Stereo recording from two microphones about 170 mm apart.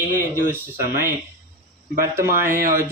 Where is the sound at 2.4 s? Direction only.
55° right (ahead or behind).